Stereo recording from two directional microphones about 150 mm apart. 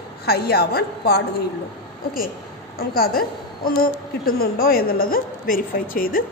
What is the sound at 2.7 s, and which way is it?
A woman's voice, 80° left.